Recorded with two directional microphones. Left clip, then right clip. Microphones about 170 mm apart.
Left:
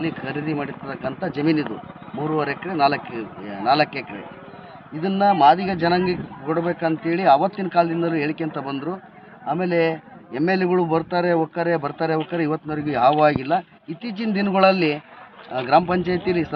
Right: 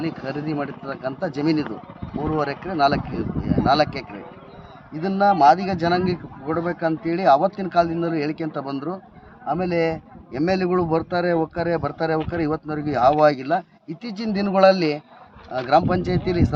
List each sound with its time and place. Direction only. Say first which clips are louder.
0.5 s speech: even; 20° right (ahead or behind)